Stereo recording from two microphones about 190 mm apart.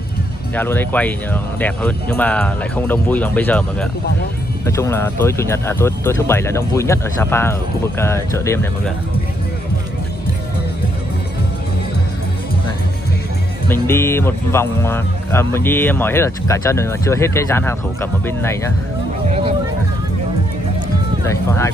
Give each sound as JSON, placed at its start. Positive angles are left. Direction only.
{"t": 0.6, "sound": "speech", "side_deg": 10}
{"t": 4.6, "sound": "speech", "side_deg": 15}
{"t": 13.7, "sound": "speech", "side_deg": 15}
{"t": 19.2, "sound": "hubbub", "side_deg": -35}